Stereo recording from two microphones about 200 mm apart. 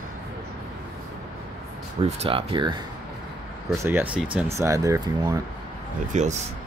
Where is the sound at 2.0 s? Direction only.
30° right (ahead or behind).